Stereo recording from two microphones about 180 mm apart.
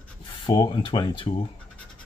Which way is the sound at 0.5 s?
20° left (ahead or behind).